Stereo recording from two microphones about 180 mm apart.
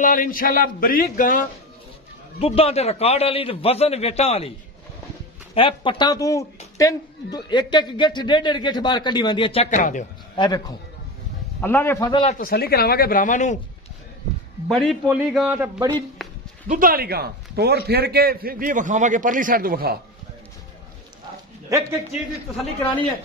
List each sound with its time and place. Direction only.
0.0 s speech: 50° left (ahead or behind)
2.3 s a man's voice: 35° left (ahead or behind)
5.5 s a woman's voice: 30° left (ahead or behind)
9.7 s speech: 45° left (ahead or behind)
10.3 s a man's voice: 25° left (ahead or behind)
11.6 s a man's voice: 15° left (ahead or behind)
12.1 s a woman's voice: 30° left (ahead or behind)
12.4 s speech: 55° left (ahead or behind)
14.7 s a man's voice: centre (ahead or behind)
16.2 s a sound: centre (ahead or behind)
16.6 s a man's voice: 50° right (ahead or behind)
21.6 s a man's voice: 15° right (ahead or behind)